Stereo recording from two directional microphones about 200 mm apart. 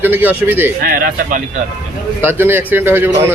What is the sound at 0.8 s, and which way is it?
Speech, 45° right (ahead or behind).